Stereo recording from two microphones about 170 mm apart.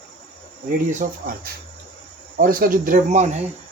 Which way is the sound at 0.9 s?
55° right (ahead or behind).